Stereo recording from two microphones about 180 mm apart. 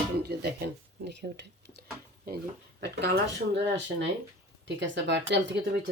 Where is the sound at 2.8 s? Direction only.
65° right (ahead or behind).